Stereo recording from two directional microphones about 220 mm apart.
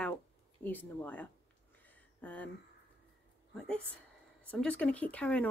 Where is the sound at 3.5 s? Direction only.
5° left (ahead or behind).